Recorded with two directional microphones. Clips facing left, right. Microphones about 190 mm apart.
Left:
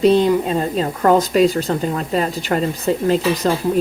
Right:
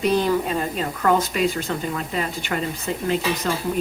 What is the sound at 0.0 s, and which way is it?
A woman's voice, 25° left (ahead or behind).